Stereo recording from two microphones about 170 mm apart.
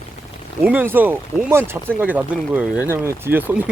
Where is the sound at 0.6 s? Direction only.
10° right (ahead or behind).